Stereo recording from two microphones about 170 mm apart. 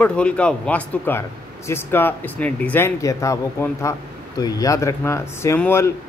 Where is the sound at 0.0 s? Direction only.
5° left (ahead or behind).